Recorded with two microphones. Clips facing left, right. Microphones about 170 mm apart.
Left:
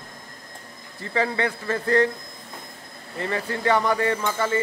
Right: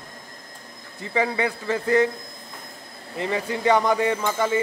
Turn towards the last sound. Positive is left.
turn(degrees=-15)  # may be behind; listen again after turning